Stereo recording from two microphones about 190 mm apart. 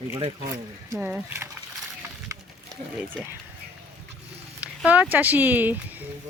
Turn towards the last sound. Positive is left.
turn(degrees=-10)  # may be behind; listen again after turning